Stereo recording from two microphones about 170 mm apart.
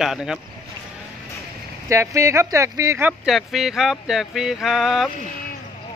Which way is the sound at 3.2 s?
Centre (ahead or behind).